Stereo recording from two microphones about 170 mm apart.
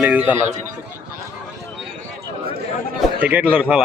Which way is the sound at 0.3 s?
45° right (ahead or behind).